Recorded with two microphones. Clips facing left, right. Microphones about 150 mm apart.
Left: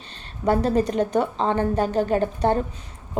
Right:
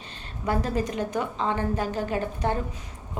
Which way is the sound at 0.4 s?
30° left (ahead or behind).